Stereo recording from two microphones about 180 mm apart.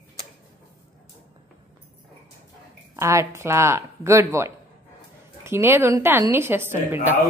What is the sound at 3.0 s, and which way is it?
A woman's voice, 15° right (ahead or behind).